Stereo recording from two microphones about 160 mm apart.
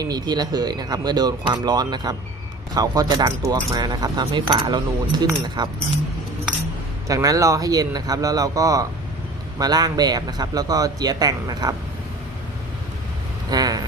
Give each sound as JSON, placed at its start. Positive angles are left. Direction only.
{"t": 0.0, "sound": "speech", "side_deg": -25}
{"t": 7.1, "sound": "speech", "side_deg": -20}
{"t": 13.5, "sound": "vehicle", "side_deg": -25}